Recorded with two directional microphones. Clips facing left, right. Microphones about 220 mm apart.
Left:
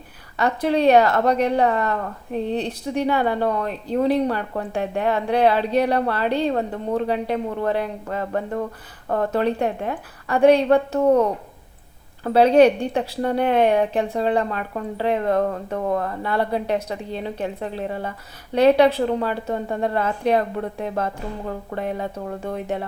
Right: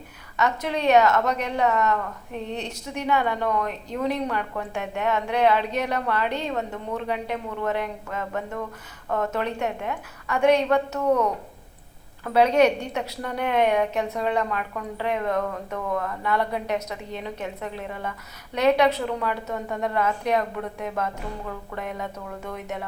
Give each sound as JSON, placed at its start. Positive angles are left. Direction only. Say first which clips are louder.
{"t": 0.3, "sound": "speech", "louder": "left 6 dB", "side_deg": 35}